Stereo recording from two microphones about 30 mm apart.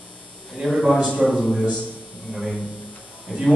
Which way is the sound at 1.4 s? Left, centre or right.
Centre.